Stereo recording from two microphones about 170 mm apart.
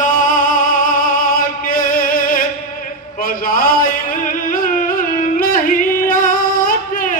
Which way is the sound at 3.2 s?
55° left (ahead or behind).